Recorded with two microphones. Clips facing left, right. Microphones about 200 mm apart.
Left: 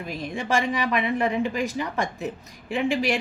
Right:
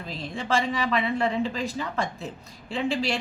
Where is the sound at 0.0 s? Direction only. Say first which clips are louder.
Left 3 dB; 15° left (ahead or behind).